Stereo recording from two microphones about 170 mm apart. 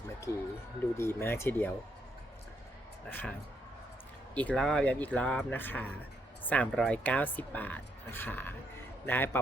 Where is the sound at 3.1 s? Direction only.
10° left (ahead or behind).